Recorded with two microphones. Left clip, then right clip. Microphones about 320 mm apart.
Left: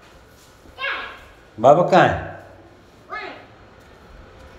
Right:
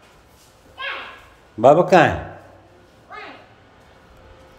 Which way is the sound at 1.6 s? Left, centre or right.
Right.